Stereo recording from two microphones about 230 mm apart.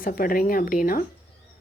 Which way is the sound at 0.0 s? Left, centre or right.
Left.